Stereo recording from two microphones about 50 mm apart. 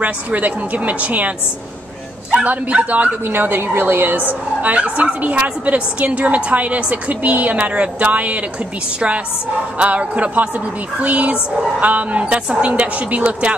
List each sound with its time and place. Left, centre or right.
0.0 s a woman's voice: right
2.3 s a woman's voice: right
3.3 s a woman's voice: right
4.3 s a woman's voice: right
9.8 s a woman's voice: right